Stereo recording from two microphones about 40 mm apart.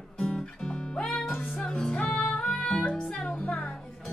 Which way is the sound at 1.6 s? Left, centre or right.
Left.